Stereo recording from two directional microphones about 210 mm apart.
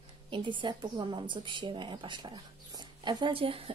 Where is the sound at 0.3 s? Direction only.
25° right (ahead or behind).